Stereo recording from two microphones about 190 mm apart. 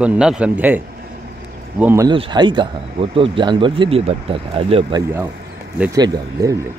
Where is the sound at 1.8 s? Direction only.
15° right (ahead or behind); by 5.0 s 30° right (ahead or behind).